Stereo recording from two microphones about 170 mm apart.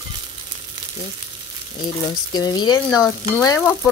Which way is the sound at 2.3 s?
25° left (ahead or behind).